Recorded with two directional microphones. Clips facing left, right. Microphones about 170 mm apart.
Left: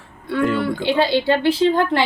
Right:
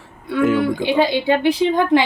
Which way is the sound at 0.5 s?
15° right (ahead or behind).